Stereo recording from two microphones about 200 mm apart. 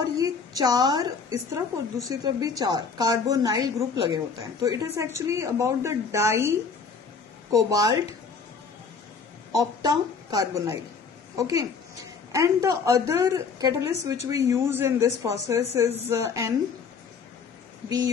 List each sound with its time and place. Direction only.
0.0 s a sound: 15° right (ahead or behind)
1.5 s a woman's voice: 15° right (ahead or behind)
7.5 s a woman's voice: 15° right (ahead or behind)
9.5 s a woman's voice: 20° right (ahead or behind)